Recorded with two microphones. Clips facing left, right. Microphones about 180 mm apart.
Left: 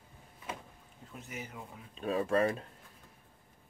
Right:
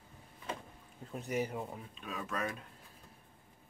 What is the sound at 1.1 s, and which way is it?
Speech, 40° right (ahead or behind).